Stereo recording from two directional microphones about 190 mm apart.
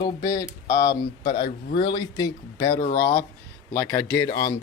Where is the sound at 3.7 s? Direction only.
10° left (ahead or behind).